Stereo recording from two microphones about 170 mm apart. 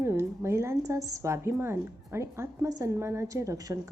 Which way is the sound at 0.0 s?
15° right (ahead or behind).